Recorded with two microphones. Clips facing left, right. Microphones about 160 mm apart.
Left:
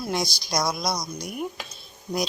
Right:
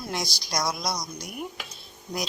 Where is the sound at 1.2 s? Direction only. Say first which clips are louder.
Left 4 dB; 30° left (ahead or behind).